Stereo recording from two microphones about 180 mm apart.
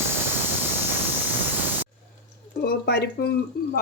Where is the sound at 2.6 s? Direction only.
60° left (ahead or behind).